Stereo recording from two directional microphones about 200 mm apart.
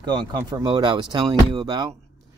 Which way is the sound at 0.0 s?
20° right (ahead or behind).